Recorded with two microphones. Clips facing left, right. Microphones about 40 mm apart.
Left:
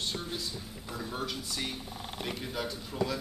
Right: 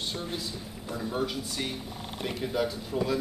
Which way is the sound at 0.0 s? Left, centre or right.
Centre.